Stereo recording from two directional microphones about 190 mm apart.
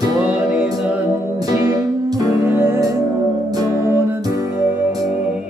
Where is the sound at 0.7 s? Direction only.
5° right (ahead or behind).